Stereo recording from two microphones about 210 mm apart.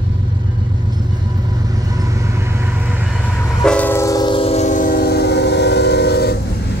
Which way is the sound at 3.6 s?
5° left (ahead or behind).